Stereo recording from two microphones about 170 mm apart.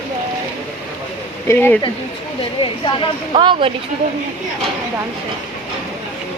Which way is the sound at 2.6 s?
30° left (ahead or behind).